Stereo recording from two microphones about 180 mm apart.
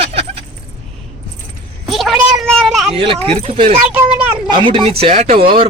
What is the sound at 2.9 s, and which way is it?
Speech, 30° right (ahead or behind).